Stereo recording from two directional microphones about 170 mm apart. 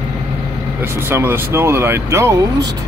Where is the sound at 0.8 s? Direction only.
15° right (ahead or behind).